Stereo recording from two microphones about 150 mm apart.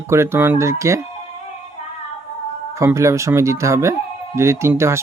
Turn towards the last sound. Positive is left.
turn(degrees=-15)  # may be behind; listen again after turning